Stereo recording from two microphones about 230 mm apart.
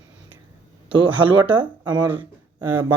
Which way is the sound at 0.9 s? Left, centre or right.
Right.